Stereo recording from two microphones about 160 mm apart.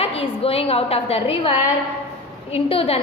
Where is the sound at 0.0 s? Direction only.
35° left (ahead or behind).